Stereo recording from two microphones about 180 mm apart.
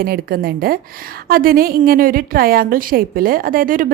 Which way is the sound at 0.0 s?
55° right (ahead or behind).